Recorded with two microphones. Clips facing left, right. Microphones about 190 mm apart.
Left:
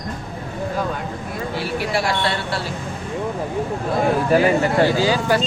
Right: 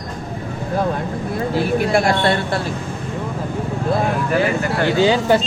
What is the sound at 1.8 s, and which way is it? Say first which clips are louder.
Speech: right 4 dB; 50° right (ahead or behind).